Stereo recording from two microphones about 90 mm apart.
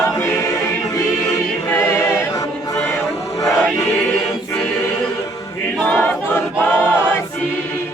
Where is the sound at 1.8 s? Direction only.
30° left (ahead or behind).